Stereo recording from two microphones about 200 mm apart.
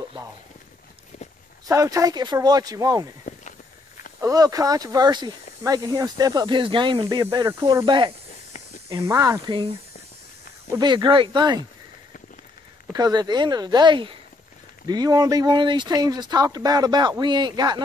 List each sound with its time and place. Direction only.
1.7 s speech: 15° right (ahead or behind)
4.2 s speech: 15° right (ahead or behind)
10.7 s speech: 20° right (ahead or behind)
12.9 s speech: 20° right (ahead or behind)